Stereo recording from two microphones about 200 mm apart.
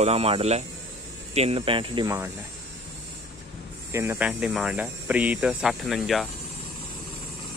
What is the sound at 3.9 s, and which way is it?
Speech, 10° right (ahead or behind).